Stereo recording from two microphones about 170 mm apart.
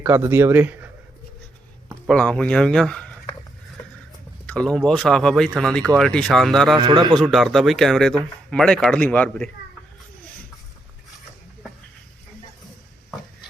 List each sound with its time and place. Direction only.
0.0 s speech: 10° right (ahead or behind)
2.0 s speech: 5° left (ahead or behind)
4.4 s speech: 5° left (ahead or behind)
6.7 s a man's voice: 25° right (ahead or behind)
7.1 s a man's voice: centre (ahead or behind)